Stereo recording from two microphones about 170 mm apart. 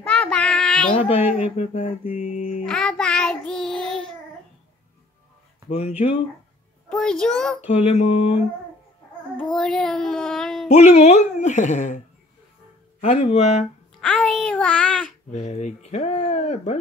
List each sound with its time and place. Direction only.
0.0 s child singing: 5° left (ahead or behind)
0.9 s speech: 35° left (ahead or behind)
2.6 s child singing: 5° left (ahead or behind)
5.7 s speech: 40° left (ahead or behind)
6.9 s a child's voice: 5° left (ahead or behind)
7.6 s speech: 40° left (ahead or behind)
9.4 s a child's voice: 5° left (ahead or behind)
10.7 s speech: 40° left (ahead or behind)
13.0 s speech: 40° left (ahead or behind)
13.9 s a child's voice: 5° left (ahead or behind)
15.3 s speech: 45° left (ahead or behind)